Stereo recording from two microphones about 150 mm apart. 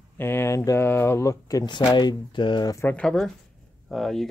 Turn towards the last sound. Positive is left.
turn(degrees=0)  # may be behind; listen again after turning